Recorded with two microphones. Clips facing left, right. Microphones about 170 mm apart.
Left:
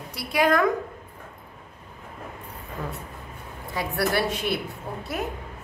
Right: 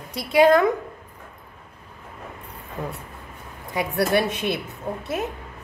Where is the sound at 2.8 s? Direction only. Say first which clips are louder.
Right 3 dB; 20° right (ahead or behind).